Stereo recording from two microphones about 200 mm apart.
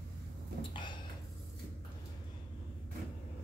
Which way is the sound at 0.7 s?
25° left (ahead or behind).